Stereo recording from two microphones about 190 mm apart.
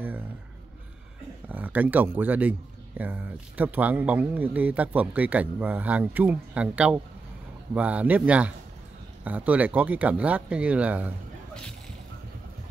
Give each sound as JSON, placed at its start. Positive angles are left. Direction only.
{"t": 1.5, "sound": "speech", "side_deg": -10}